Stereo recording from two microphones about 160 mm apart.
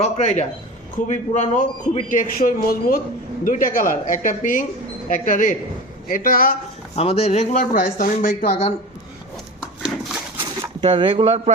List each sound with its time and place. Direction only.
0.0 s a man's voice: 45° left (ahead or behind); by 6.6 s 65° left (ahead or behind)
6.9 s speech: 40° left (ahead or behind); by 8.4 s 60° left (ahead or behind)
8.4 s speech: 40° left (ahead or behind)
10.3 s a sound: 35° right (ahead or behind)